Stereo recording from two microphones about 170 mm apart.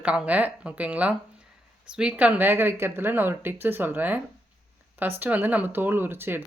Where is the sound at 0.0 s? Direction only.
5° right (ahead or behind).